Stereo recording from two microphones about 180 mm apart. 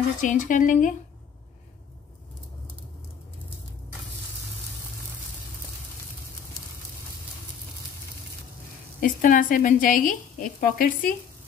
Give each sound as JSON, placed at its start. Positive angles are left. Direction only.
{"t": 0.2, "sound": "a woman's voice", "side_deg": 45}
{"t": 9.0, "sound": "a woman's voice", "side_deg": 50}